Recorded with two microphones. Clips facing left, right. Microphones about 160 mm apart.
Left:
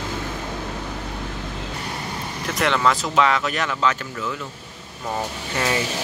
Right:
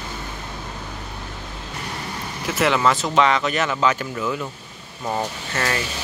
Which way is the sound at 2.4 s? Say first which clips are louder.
Right 1 dB; 5° right (ahead or behind).